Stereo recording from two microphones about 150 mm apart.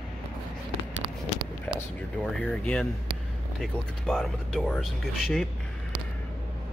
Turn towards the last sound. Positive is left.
turn(degrees=0)  # may be behind; listen again after turning